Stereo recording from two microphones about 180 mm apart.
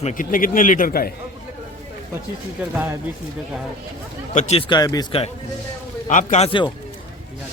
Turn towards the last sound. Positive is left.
turn(degrees=30)  # may be behind; listen again after turning